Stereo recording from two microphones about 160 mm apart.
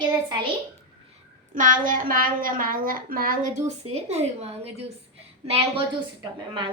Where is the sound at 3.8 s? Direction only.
40° right (ahead or behind).